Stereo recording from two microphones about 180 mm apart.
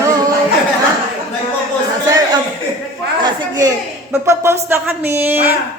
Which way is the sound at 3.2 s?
20° right (ahead or behind).